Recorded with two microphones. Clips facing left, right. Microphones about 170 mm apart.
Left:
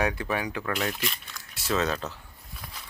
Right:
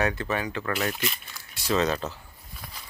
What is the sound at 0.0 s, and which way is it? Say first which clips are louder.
Speech: right 1 dB; 10° left (ahead or behind).